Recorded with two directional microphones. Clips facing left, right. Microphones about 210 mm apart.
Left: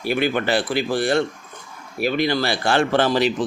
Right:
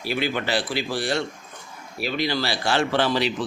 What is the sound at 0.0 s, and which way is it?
Speech, 55° left (ahead or behind).